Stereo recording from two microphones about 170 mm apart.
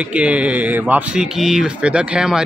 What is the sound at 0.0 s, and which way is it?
Speech, 5° right (ahead or behind).